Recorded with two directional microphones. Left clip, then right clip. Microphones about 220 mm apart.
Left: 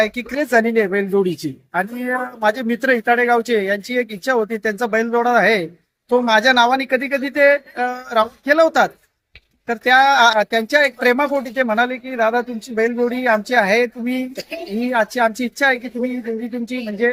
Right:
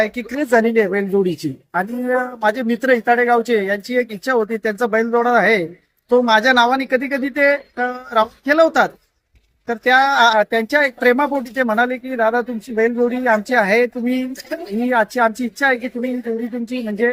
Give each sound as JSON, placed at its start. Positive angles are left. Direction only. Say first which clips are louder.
{"t": 0.0, "sound": "speech", "louder": "left 1 dB", "side_deg": 0}